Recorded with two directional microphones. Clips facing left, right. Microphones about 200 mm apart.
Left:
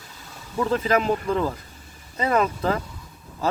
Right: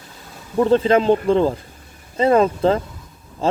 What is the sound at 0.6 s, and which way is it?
Speech, 30° right (ahead or behind).